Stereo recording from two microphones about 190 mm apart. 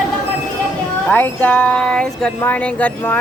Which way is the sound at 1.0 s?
10° left (ahead or behind).